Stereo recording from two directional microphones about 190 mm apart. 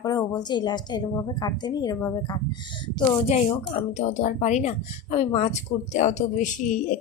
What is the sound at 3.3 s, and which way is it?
Speech, 35° left (ahead or behind).